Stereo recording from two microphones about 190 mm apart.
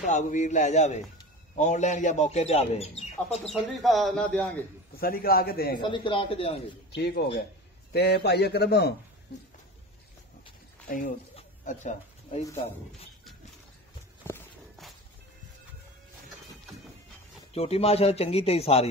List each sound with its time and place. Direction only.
0.0 s a man's voice: 40° left (ahead or behind)
3.4 s speech: centre (ahead or behind)
4.9 s a man's voice: 50° left (ahead or behind)
5.8 s a man's voice: 25° left (ahead or behind)
7.0 s a man's voice: 60° left (ahead or behind)
10.9 s a man's voice: 45° left (ahead or behind)
11.3 s a sound: 35° left (ahead or behind)
14.2 s walk: 10° left (ahead or behind)
17.5 s a man's voice: 30° left (ahead or behind)